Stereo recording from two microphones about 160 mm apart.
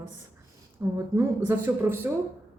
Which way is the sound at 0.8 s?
15° right (ahead or behind).